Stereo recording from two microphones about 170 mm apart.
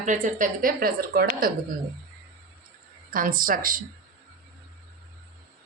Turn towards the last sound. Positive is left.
turn(degrees=-55)  # may be behind; listen again after turning